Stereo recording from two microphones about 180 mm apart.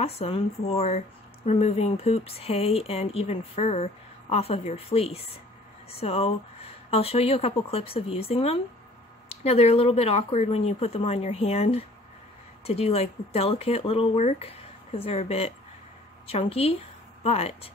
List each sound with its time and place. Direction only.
0.0 s speech: 35° left (ahead or behind)